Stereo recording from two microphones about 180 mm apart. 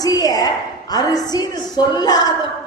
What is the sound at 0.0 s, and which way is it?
A woman's voice, 20° left (ahead or behind).